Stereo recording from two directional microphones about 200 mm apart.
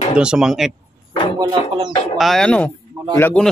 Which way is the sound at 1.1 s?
25° left (ahead or behind).